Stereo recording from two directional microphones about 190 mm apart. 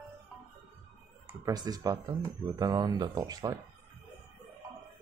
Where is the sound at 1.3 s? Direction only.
20° right (ahead or behind).